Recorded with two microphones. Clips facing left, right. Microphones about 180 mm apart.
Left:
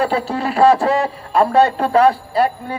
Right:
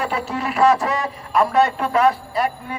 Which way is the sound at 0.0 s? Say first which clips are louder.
Left 5 dB; 30° left (ahead or behind).